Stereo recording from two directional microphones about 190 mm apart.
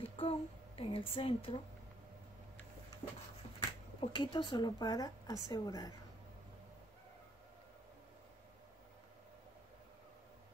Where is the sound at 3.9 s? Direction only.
25° left (ahead or behind).